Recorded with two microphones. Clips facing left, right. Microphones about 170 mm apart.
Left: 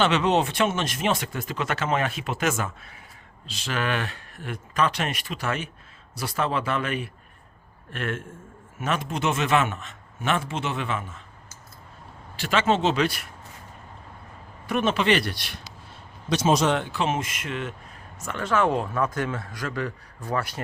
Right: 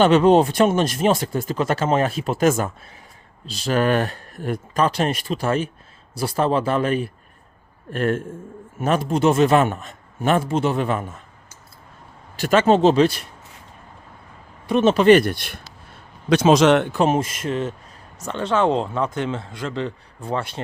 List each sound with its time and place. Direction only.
0.0 s speech: 45° right (ahead or behind)
12.4 s speech: 45° right (ahead or behind)
14.7 s speech: 25° right (ahead or behind)
14.9 s speech: 45° right (ahead or behind)
16.3 s speech: 85° right
16.9 s speech: 40° right (ahead or behind)